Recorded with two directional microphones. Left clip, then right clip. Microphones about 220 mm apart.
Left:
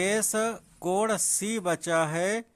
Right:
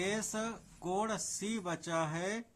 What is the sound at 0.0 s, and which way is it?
Speech, 40° left (ahead or behind).